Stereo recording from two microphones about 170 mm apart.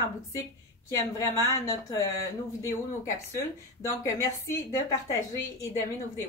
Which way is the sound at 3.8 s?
20° left (ahead or behind).